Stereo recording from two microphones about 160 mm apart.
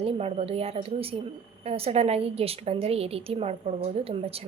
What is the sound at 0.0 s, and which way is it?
A woman's voice, 40° right (ahead or behind).